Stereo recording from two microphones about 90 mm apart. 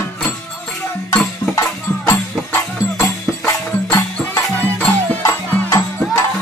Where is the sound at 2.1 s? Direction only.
25° left (ahead or behind).